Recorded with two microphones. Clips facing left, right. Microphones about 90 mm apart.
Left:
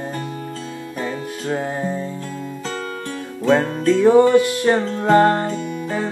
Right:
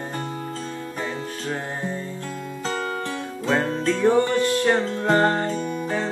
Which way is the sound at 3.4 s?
10° left (ahead or behind).